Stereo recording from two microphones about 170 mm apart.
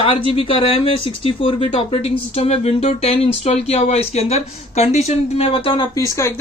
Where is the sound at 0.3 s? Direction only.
35° left (ahead or behind).